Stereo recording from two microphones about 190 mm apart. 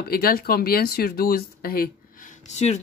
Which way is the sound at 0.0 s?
50° left (ahead or behind).